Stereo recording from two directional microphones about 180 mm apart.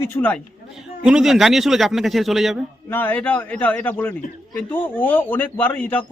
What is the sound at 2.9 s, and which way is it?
A man's voice, 10° left (ahead or behind).